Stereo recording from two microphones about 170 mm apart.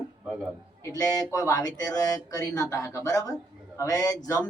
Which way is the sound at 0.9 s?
20° left (ahead or behind).